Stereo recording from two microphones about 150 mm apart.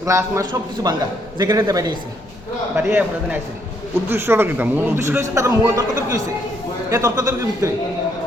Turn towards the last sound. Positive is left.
turn(degrees=-20)  # may be behind; listen again after turning